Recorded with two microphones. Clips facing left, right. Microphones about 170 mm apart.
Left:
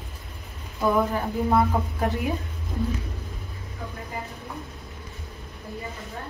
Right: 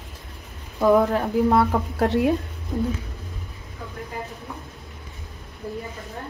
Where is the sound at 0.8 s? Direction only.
70° right (ahead or behind).